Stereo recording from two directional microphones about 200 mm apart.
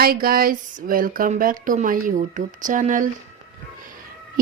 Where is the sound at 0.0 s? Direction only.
50° right (ahead or behind).